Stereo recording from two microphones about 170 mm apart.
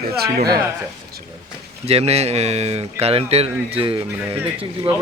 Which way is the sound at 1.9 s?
35° right (ahead or behind).